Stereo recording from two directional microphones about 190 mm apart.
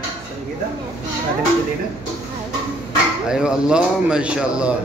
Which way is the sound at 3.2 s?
5° right (ahead or behind).